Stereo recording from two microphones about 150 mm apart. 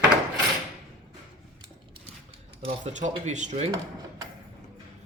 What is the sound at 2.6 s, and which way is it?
Speech, 55° right (ahead or behind).